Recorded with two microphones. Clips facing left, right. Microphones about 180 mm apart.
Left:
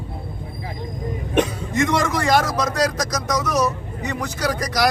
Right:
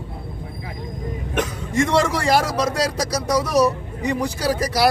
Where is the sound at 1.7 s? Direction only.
30° right (ahead or behind).